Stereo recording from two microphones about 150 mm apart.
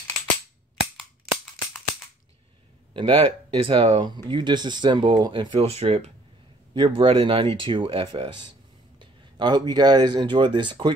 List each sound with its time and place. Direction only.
2.9 s speech: 35° right (ahead or behind)
6.7 s speech: 35° right (ahead or behind)